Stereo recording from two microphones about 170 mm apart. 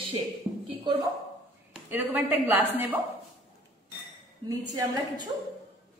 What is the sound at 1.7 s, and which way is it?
A woman's voice, 5° right (ahead or behind).